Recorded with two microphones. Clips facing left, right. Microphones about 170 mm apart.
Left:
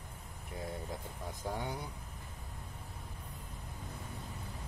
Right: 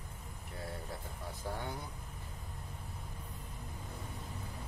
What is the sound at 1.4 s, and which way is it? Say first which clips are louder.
Speech: left 2 dB; 15° left (ahead or behind).